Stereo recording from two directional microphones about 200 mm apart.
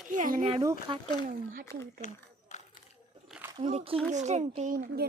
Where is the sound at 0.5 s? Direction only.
20° right (ahead or behind).